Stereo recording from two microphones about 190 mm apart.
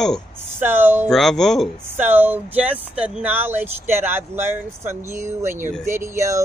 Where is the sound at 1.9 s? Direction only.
10° right (ahead or behind).